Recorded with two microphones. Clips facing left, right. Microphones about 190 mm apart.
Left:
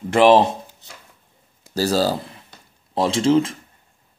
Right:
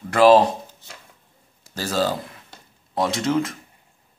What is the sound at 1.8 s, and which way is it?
Speech, 35° left (ahead or behind).